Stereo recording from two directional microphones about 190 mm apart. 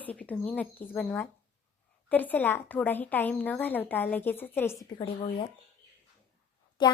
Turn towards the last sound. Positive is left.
turn(degrees=25)  # may be behind; listen again after turning